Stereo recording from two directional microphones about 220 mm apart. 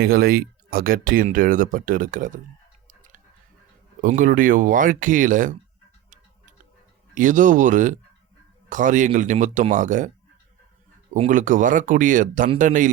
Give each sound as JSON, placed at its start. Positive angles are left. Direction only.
{"t": 0.0, "sound": "speech", "side_deg": -45}
{"t": 2.8, "sound": "a sound", "side_deg": -35}
{"t": 4.0, "sound": "speech", "side_deg": -35}
{"t": 7.1, "sound": "speech", "side_deg": -35}
{"t": 11.1, "sound": "speech", "side_deg": -35}